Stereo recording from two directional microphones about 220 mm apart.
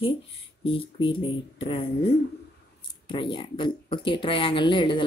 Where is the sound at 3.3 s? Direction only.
20° left (ahead or behind).